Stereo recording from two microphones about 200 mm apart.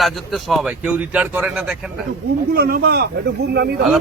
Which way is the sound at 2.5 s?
50° right (ahead or behind).